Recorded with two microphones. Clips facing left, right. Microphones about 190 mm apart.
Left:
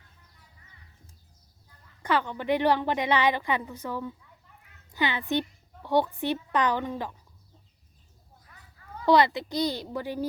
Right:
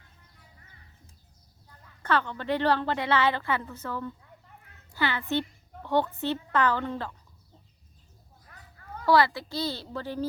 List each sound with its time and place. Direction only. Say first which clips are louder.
2.0 s a woman's voice: left 1 dB; 10° left (ahead or behind)
9.0 s a woman's voice: left 1 dB; 20° left (ahead or behind)